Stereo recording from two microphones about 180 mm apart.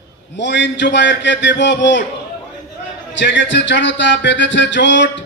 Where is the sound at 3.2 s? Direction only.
85° left.